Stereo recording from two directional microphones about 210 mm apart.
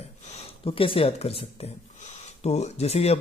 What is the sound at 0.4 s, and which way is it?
Speech, 25° left (ahead or behind).